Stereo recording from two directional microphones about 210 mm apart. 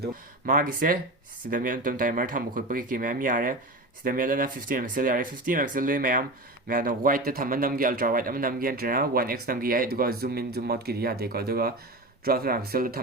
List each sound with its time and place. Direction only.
0.0 s speech: 40° right (ahead or behind)